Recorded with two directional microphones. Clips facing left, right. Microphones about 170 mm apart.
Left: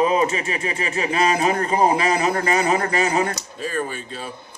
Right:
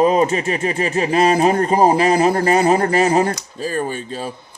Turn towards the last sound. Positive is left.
turn(degrees=-35)  # may be behind; listen again after turning